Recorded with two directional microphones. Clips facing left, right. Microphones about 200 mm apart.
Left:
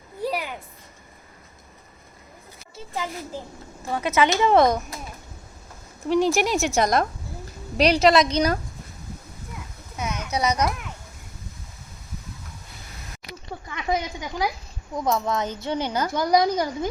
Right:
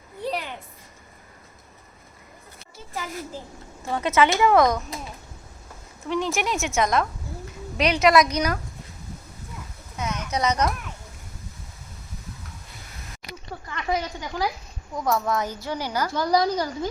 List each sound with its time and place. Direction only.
0.2 s a sound: 10° left (ahead or behind)
2.7 s a child's voice: 20° left (ahead or behind)
4.3 s a woman's voice: 25° left (ahead or behind)
6.1 s a woman's voice: 35° left (ahead or behind)
10.0 s speech: 10° left (ahead or behind)
13.7 s a sound: 20° left (ahead or behind)
14.9 s a woman's voice: 20° left (ahead or behind)